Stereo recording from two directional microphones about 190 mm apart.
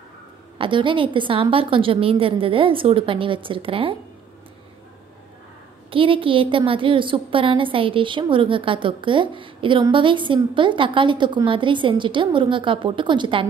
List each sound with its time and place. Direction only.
0.6 s a woman's voice: 25° right (ahead or behind)
5.9 s a woman's voice: 30° right (ahead or behind)